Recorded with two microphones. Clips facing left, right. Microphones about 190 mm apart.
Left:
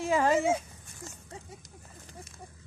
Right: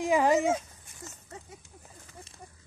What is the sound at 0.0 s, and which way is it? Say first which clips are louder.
Speech: right 2 dB; 15° right (ahead or behind).